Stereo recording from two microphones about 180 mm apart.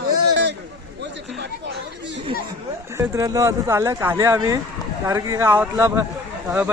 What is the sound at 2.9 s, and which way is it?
Speech, 15° right (ahead or behind).